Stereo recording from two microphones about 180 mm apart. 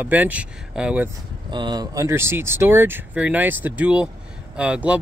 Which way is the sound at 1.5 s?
25° right (ahead or behind).